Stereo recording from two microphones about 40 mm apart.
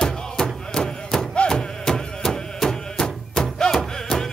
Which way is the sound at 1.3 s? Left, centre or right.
Centre.